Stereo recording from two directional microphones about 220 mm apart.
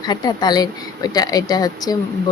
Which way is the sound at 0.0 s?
20° left (ahead or behind).